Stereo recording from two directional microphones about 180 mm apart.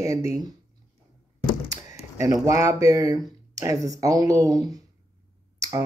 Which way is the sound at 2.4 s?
20° right (ahead or behind).